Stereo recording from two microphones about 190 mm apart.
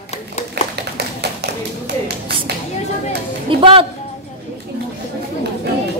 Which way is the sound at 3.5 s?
25° right (ahead or behind).